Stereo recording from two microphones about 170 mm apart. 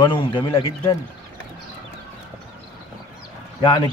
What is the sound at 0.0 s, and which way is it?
Speech, 30° left (ahead or behind).